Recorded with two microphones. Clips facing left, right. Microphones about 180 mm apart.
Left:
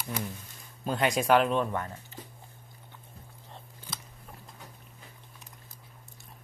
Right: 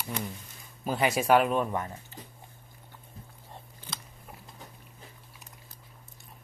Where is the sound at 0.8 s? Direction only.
5° right (ahead or behind).